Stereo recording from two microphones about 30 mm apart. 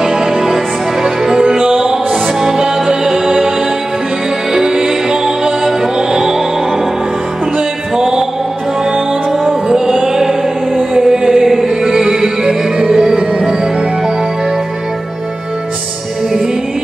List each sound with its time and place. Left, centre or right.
0.0 s music: centre
4.6 s music: centre
7.9 s music: centre
9.7 s music: right
9.9 s mantra: centre
11.0 s music: centre